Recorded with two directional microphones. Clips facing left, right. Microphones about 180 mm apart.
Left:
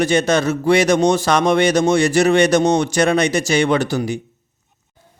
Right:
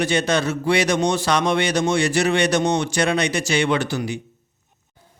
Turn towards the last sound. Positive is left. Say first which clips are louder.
# left 4 dB
turn(degrees=40)  # may be behind; listen again after turning